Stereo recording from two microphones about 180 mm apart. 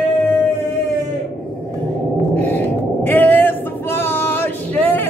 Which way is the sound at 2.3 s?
10° left (ahead or behind).